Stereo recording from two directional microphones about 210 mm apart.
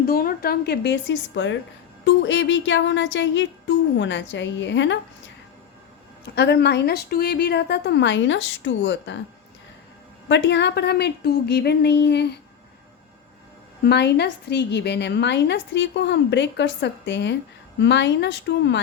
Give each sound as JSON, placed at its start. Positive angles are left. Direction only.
{"t": 0.0, "sound": "a woman's voice", "side_deg": 45}
{"t": 6.3, "sound": "a woman's voice", "side_deg": 55}
{"t": 10.2, "sound": "a woman's voice", "side_deg": 60}
{"t": 13.8, "sound": "a woman's voice", "side_deg": 50}